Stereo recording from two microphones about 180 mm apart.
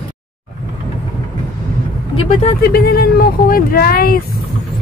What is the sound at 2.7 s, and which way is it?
Speech, 60° left (ahead or behind).